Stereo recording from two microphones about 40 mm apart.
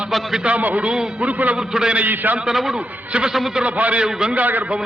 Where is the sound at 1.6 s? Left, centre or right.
Centre.